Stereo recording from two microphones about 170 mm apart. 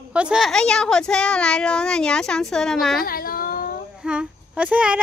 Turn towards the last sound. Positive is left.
turn(degrees=-10)  # may be behind; listen again after turning